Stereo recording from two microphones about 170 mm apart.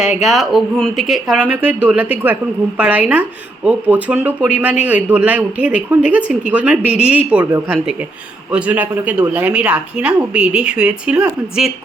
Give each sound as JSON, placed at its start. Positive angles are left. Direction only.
{"t": 0.0, "sound": "speech", "side_deg": 40}
{"t": 0.3, "sound": "speech", "side_deg": 0}